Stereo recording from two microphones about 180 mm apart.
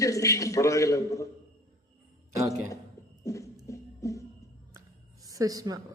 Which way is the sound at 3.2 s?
15° left (ahead or behind).